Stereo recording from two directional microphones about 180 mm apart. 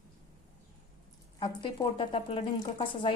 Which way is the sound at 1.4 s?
25° left (ahead or behind).